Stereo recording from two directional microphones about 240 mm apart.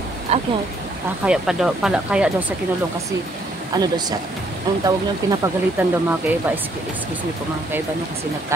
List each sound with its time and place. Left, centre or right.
0.3 s speech: right
1.2 s speech: centre
3.7 s speech: centre